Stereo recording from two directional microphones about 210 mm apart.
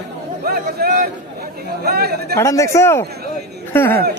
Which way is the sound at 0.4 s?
45° right (ahead or behind).